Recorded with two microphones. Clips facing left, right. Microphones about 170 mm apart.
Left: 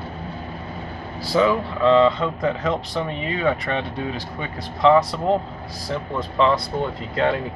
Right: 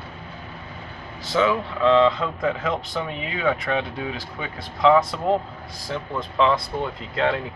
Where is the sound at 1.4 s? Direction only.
Centre (ahead or behind).